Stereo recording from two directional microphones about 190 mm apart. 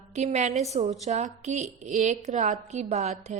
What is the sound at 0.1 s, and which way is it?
A woman's voice, 35° right (ahead or behind).